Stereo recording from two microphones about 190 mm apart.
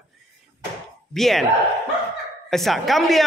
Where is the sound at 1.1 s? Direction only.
Centre (ahead or behind).